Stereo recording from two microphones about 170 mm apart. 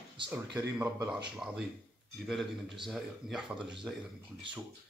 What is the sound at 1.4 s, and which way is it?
Speech, 5° right (ahead or behind).